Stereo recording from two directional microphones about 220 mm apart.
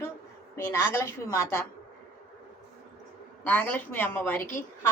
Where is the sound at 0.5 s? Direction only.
10° left (ahead or behind).